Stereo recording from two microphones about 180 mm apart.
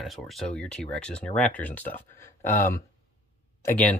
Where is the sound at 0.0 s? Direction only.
Centre (ahead or behind).